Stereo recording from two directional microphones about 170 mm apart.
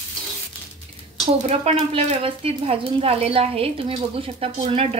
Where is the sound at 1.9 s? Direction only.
35° right (ahead or behind).